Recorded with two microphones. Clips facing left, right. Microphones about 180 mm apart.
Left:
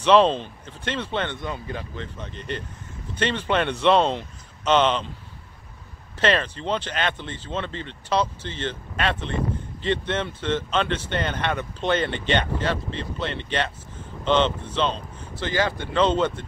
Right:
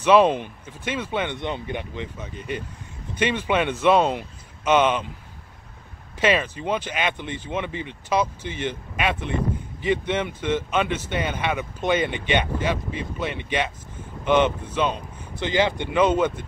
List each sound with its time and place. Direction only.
0.0 s speech: 10° right (ahead or behind)
1.4 s speech: 20° right (ahead or behind)
2.1 s speech: 10° right (ahead or behind)
6.1 s speech: 10° right (ahead or behind)